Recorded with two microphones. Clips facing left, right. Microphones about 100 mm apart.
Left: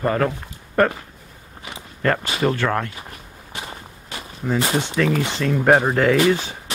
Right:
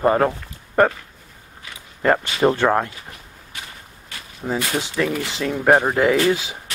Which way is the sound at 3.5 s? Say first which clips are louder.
Left 5 dB; 25° left (ahead or behind).